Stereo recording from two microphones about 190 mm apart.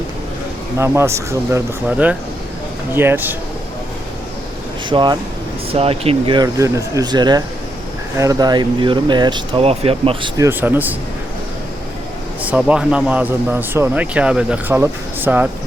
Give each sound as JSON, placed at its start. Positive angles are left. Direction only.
{"t": 0.8, "sound": "speech", "side_deg": -15}
{"t": 4.9, "sound": "speech", "side_deg": -25}
{"t": 10.3, "sound": "speech", "side_deg": -15}
{"t": 12.4, "sound": "speech", "side_deg": -5}